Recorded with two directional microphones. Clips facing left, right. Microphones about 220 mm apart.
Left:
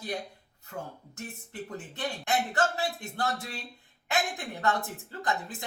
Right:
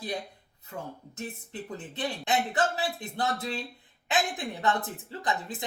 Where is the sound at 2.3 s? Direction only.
20° right (ahead or behind).